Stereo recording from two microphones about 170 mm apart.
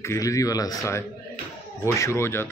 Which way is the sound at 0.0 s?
15° left (ahead or behind).